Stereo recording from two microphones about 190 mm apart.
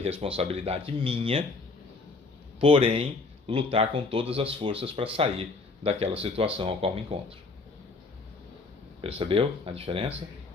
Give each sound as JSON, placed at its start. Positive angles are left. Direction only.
{"t": 0.0, "sound": "speech", "side_deg": -30}
{"t": 2.6, "sound": "speech", "side_deg": -30}
{"t": 9.0, "sound": "speech", "side_deg": -30}